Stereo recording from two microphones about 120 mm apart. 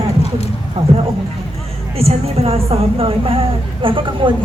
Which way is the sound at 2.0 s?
55° right (ahead or behind).